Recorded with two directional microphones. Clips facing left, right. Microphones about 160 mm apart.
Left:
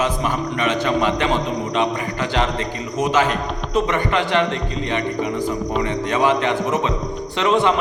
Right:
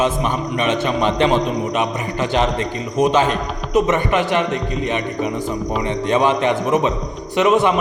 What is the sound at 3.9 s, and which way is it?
A man's voice, 20° right (ahead or behind).